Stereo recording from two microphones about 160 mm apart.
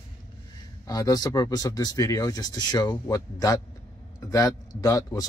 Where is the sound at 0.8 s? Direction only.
25° left (ahead or behind).